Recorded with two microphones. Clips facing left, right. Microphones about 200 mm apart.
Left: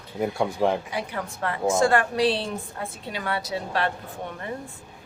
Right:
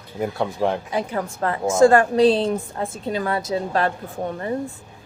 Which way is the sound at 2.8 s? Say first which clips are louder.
Right 7 dB; 35° right (ahead or behind).